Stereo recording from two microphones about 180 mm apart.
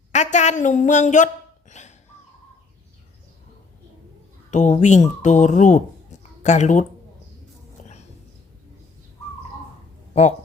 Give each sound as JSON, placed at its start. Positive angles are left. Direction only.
{"t": 0.1, "sound": "a woman's voice", "side_deg": 40}
{"t": 1.7, "sound": "a sound", "side_deg": 40}
{"t": 4.5, "sound": "speech", "side_deg": 40}